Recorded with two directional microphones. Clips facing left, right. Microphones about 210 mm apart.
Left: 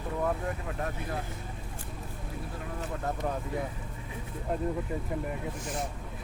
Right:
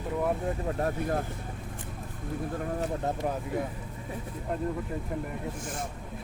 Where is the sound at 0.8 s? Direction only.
40° right (ahead or behind).